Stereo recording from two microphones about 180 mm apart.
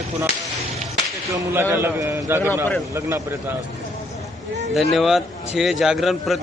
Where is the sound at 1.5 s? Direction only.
10° right (ahead or behind).